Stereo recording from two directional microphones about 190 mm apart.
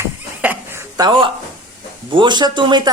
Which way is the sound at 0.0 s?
10° right (ahead or behind).